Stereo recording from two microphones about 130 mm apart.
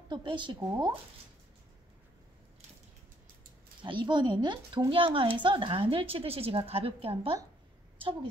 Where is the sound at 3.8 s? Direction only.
35° right (ahead or behind).